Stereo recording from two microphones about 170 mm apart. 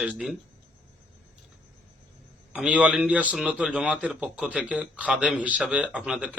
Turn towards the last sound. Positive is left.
turn(degrees=-5)  # may be behind; listen again after turning